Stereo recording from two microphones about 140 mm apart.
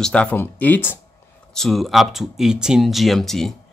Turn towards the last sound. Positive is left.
turn(degrees=0)  # may be behind; listen again after turning